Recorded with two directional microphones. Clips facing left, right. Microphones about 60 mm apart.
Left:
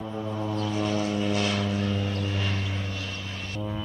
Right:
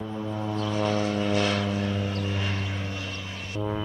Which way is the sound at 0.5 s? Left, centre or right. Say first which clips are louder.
Right 2 dB; right.